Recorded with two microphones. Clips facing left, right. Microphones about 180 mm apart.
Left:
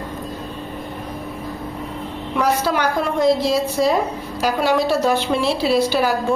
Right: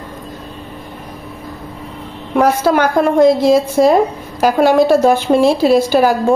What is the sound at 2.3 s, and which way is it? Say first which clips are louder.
A woman's voice: right 7 dB; 50° right (ahead or behind).